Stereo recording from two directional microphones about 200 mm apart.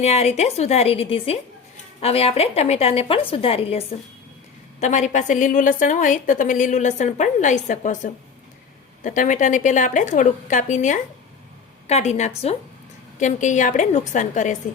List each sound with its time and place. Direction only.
0.0 s a woman's voice: 30° left (ahead or behind)